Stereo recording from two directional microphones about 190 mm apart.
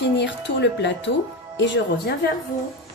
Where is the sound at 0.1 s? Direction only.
65° left (ahead or behind).